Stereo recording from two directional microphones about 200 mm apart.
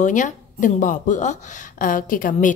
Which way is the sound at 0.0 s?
40° left (ahead or behind).